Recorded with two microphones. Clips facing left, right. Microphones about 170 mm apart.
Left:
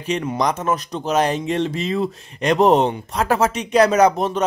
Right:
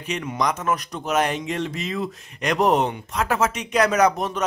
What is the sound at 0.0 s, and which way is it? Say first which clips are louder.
Speech: left 4 dB; 35° left (ahead or behind).